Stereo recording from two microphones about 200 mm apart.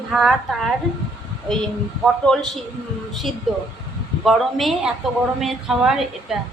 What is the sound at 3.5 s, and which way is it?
A woman's voice, centre (ahead or behind).